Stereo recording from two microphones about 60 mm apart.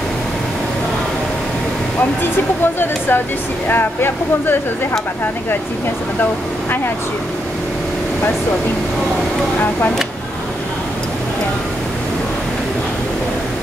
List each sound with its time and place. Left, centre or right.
2.6 s speech: left